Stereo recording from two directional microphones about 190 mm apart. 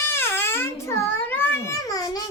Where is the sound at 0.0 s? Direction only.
10° left (ahead or behind).